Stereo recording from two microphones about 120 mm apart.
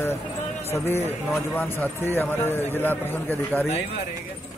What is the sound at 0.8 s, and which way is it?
Speech, 20° left (ahead or behind).